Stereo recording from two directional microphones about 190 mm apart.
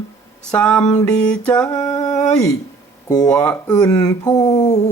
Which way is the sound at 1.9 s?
15° left (ahead or behind).